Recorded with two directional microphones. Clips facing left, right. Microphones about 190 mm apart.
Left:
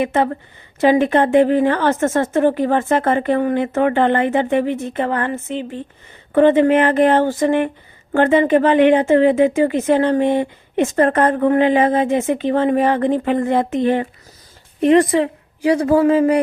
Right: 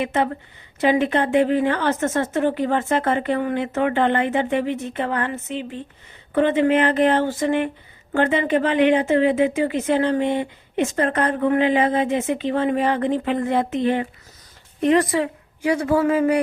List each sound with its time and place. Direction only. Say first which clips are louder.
0.0 s speech: left 4 dB; 50° left (ahead or behind)
15.1 s a woman's voice: left 5 dB; 35° left (ahead or behind)